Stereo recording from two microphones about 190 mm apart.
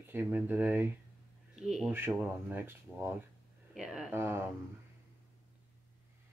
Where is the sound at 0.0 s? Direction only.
10° right (ahead or behind).